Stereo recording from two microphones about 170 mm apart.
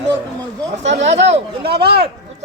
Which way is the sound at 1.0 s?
40° right (ahead or behind).